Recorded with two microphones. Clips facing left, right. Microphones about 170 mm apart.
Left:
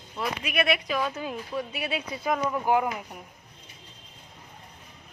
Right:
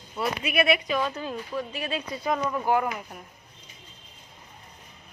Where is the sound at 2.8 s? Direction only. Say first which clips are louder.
Even; 15° left (ahead or behind).